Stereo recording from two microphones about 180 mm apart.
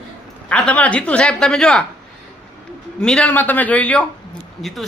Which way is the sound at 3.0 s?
5° left (ahead or behind).